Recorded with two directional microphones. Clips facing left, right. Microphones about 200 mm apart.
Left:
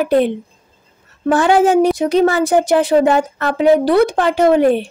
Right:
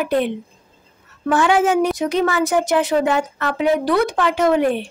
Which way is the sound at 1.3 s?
35° left (ahead or behind).